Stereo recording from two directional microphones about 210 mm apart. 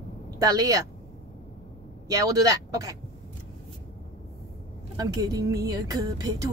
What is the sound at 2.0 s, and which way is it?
Speech, 15° right (ahead or behind).